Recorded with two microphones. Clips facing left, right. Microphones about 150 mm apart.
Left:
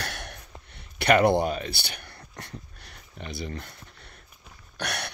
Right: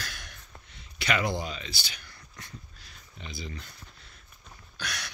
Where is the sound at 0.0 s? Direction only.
65° left (ahead or behind).